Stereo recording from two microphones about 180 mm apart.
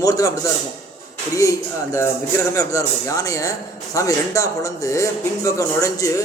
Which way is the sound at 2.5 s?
20° left (ahead or behind).